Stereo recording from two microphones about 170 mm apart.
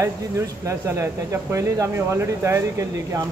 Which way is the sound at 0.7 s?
15° right (ahead or behind).